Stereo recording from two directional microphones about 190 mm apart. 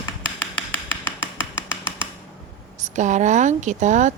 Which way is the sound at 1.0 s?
10° left (ahead or behind).